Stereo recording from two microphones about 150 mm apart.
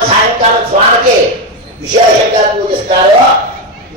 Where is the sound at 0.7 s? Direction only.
65° right (ahead or behind).